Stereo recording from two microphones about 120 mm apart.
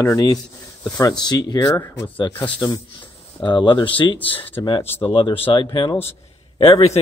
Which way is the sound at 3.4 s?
40° left (ahead or behind).